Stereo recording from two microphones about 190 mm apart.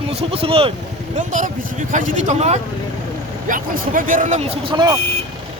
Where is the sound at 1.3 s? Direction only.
40° right (ahead or behind).